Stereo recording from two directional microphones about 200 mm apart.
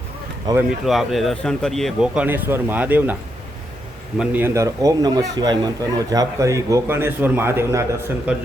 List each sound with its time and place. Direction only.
0.5 s speech: 20° right (ahead or behind)
0.9 s speech: centre (ahead or behind)
4.2 s a man's voice: 10° right (ahead or behind)